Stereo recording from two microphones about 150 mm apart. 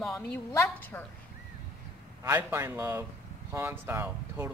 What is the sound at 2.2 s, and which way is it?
Speech, 15° right (ahead or behind).